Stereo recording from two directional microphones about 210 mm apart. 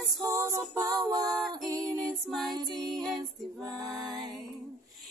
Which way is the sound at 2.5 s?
20° right (ahead or behind).